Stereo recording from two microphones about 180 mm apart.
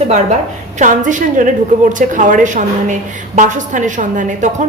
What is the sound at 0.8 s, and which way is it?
A woman's voice, 45° right (ahead or behind).